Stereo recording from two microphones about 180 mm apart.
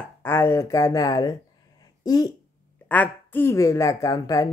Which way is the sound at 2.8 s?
10° left (ahead or behind).